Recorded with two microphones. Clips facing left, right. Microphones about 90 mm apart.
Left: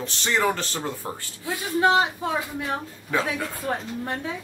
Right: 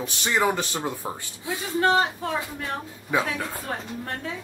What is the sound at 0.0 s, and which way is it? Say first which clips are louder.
Speech: even; 10° right (ahead or behind).